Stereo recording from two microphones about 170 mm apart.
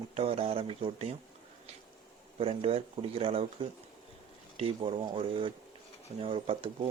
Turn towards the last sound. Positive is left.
turn(degrees=-30)  # may be behind; listen again after turning